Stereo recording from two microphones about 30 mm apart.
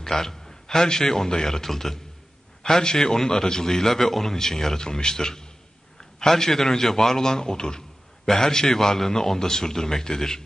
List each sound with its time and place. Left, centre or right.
0.0 s a man's voice: centre
2.6 s a man's voice: left
4.7 s a man's voice: left